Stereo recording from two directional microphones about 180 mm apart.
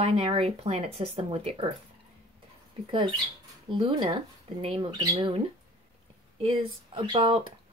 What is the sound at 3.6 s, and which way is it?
Speech, 25° right (ahead or behind).